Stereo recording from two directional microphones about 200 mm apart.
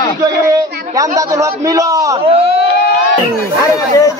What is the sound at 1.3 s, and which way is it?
Speech, 15° right (ahead or behind).